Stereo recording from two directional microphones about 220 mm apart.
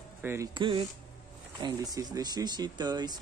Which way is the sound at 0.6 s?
20° right (ahead or behind).